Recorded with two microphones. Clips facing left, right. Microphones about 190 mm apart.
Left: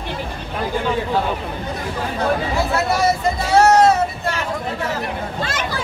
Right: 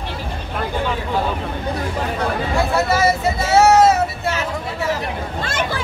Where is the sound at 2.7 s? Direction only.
5° right (ahead or behind).